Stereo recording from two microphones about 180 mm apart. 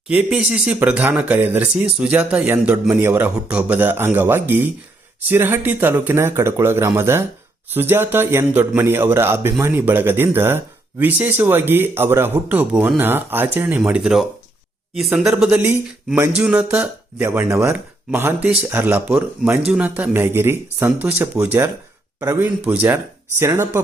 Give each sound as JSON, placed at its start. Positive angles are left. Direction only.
{"t": 0.1, "sound": "speech", "side_deg": -5}